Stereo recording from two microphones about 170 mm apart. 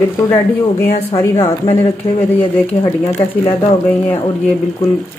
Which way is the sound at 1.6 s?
20° left (ahead or behind).